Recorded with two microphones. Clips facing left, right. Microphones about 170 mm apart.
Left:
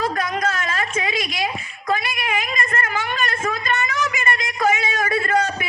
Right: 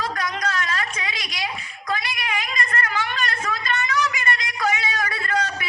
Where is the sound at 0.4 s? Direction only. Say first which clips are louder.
Left 3 dB; 50° left (ahead or behind).